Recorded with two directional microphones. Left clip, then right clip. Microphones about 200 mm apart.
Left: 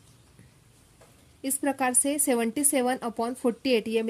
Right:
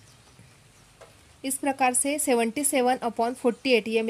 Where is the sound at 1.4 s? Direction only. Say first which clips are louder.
Right 3 dB; 15° left (ahead or behind).